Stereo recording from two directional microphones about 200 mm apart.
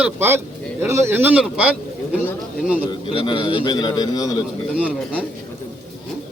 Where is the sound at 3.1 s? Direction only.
25° left (ahead or behind).